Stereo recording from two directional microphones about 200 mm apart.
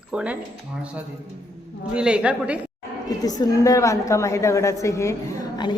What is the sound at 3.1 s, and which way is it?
A woman's voice, 20° left (ahead or behind).